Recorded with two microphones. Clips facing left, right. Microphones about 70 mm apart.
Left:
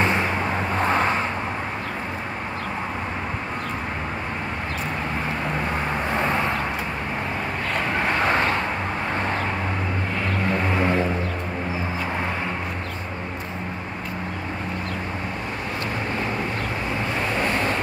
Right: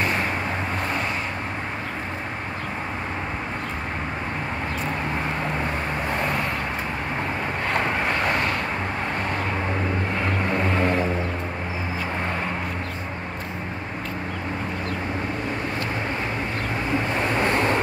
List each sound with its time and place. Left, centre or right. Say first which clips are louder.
0.0 s vehicle: left 3 dB; left
8.3 s vehicle: left 3 dB; left
10.7 s a sound: even; centre